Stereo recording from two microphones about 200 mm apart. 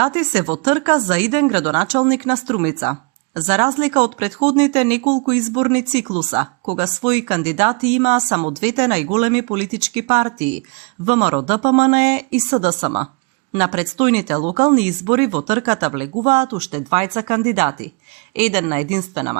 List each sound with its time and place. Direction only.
0.0 s speech: 30° right (ahead or behind)